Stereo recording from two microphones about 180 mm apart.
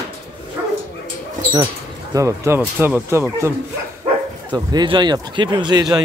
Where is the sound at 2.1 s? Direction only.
15° right (ahead or behind).